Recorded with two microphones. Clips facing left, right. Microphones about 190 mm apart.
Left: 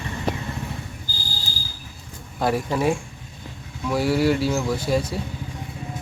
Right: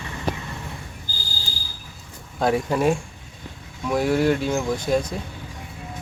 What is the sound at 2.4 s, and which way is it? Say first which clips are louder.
Speech: right 1 dB; 5° left (ahead or behind).